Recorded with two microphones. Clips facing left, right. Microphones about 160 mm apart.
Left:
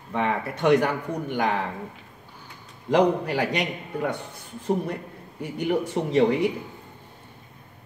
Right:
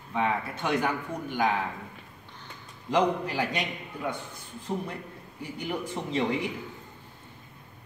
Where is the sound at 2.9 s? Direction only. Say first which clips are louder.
Left 5 dB; 70° left (ahead or behind).